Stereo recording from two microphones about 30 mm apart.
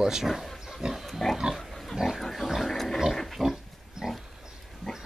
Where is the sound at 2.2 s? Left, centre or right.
Centre.